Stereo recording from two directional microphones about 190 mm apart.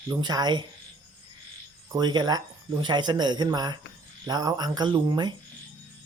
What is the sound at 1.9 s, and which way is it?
Speech, 20° right (ahead or behind).